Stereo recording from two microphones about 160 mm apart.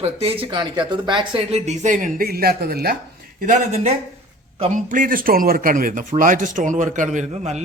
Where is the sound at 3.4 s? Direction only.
50° right (ahead or behind).